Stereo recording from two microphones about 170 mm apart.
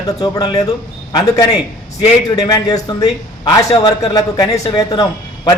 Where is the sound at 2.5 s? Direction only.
20° left (ahead or behind).